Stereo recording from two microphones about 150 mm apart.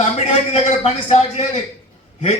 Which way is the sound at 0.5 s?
40° left (ahead or behind).